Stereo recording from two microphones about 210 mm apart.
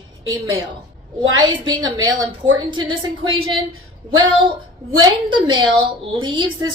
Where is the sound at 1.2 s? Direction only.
20° right (ahead or behind).